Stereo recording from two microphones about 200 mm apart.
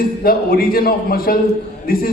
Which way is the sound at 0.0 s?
50° left (ahead or behind).